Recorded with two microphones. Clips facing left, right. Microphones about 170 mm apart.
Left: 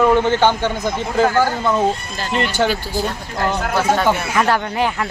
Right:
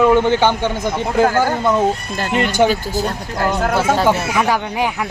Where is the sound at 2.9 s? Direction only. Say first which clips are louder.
Right 1 dB; 45° right (ahead or behind).